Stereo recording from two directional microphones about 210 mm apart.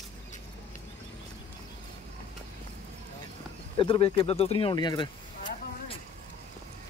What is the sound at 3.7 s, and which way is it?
Speech, 25° left (ahead or behind).